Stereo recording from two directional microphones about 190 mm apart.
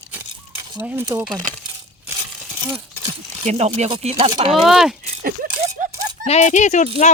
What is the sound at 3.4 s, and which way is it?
Speech, 35° right (ahead or behind).